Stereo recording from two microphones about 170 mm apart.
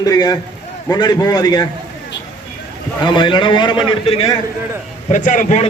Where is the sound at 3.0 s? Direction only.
25° left (ahead or behind).